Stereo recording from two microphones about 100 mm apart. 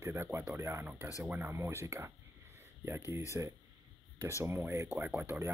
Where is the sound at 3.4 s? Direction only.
20° right (ahead or behind).